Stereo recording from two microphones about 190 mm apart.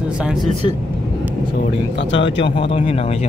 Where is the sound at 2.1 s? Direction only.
75° left (ahead or behind).